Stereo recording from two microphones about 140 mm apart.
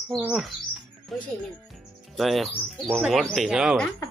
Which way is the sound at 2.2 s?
Centre (ahead or behind).